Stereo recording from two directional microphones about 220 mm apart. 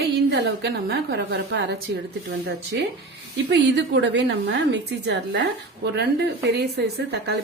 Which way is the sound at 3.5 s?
55° right (ahead or behind).